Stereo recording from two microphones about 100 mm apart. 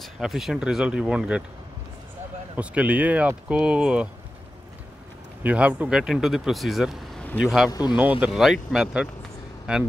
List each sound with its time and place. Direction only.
0.0 s speech: centre (ahead or behind)
2.5 s speech: 15° right (ahead or behind)
5.4 s speech: 15° right (ahead or behind)
7.7 s speech: 45° left (ahead or behind)
8.0 s speech: 15° right (ahead or behind)
8.3 s speech: 5° right (ahead or behind)